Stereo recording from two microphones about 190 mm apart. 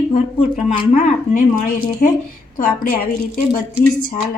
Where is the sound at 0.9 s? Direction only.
40° left (ahead or behind).